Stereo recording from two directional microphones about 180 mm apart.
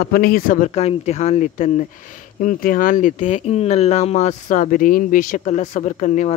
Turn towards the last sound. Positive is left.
turn(degrees=40)  # may be behind; listen again after turning